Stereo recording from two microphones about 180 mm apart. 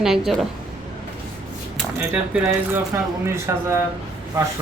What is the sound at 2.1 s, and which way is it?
Speech, 10° right (ahead or behind).